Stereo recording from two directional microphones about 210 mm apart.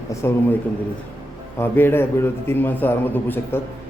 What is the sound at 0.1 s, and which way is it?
Speech, 15° left (ahead or behind).